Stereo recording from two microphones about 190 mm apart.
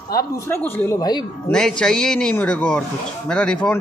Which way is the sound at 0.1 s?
15° left (ahead or behind).